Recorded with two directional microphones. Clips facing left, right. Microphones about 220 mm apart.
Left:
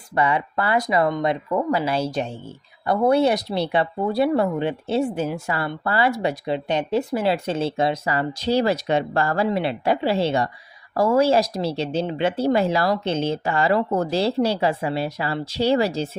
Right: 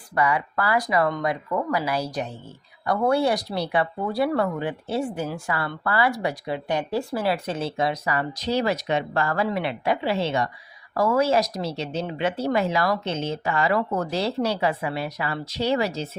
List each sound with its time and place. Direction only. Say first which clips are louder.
0.2 s speech: left 2 dB; 25° left (ahead or behind)